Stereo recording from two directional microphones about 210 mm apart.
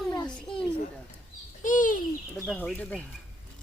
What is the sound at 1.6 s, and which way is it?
Bird, 40° left (ahead or behind).